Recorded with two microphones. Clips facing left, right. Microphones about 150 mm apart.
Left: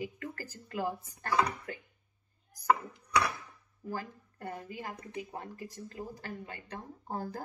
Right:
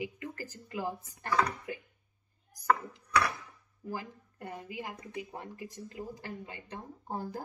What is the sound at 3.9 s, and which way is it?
A woman's voice, 15° right (ahead or behind).